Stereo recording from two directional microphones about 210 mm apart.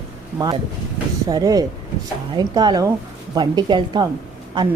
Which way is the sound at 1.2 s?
20° right (ahead or behind).